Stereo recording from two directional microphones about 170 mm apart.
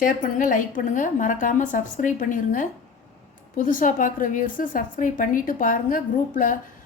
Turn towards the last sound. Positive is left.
turn(degrees=55)  # may be behind; listen again after turning